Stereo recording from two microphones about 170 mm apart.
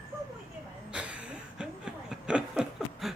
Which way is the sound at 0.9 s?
5° right (ahead or behind).